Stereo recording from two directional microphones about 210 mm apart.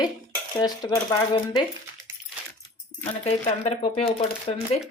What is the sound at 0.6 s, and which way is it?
Speech, 20° left (ahead or behind).